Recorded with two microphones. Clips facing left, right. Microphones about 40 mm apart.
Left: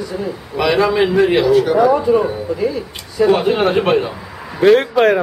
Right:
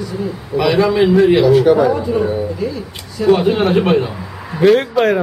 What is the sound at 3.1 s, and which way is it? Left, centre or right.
A man's voice, centre.